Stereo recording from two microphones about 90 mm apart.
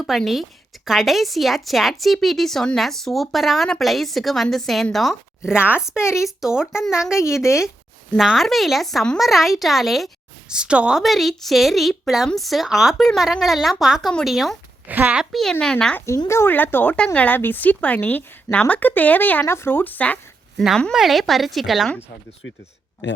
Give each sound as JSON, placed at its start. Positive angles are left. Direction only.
{"t": 0.0, "sound": "a woman's voice", "side_deg": 0}
{"t": 6.0, "sound": "speech", "side_deg": 30}
{"t": 6.2, "sound": "a child's voice", "side_deg": -5}
{"t": 14.8, "sound": "a child's voice", "side_deg": -15}
{"t": 15.3, "sound": "a woman's voice", "side_deg": 5}
{"t": 16.0, "sound": "a woman's voice", "side_deg": 30}
{"t": 20.6, "sound": "a woman's voice", "side_deg": 5}